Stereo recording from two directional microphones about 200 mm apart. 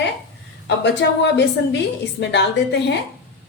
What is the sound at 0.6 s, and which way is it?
A woman's voice, 60° left (ahead or behind).